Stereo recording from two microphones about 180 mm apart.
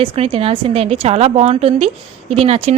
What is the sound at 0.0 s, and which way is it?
A woman's voice, 30° right (ahead or behind).